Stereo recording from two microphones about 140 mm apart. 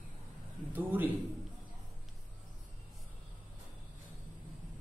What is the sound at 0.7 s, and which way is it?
Speech, 15° right (ahead or behind).